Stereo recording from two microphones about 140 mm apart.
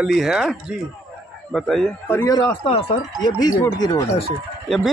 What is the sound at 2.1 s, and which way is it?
Speech, 25° left (ahead or behind).